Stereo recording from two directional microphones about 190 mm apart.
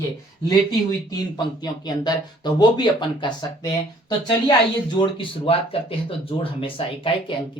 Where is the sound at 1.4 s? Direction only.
20° left (ahead or behind).